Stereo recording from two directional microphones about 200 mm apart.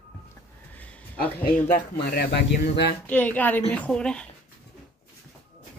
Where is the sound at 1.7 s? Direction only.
50° left (ahead or behind).